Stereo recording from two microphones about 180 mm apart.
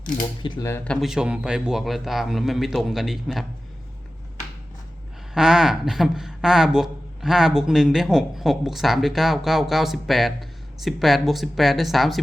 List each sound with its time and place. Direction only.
0.4 s speech: 25° left (ahead or behind)
1.0 s speech: 5° right (ahead or behind)
5.3 s speech: centre (ahead or behind)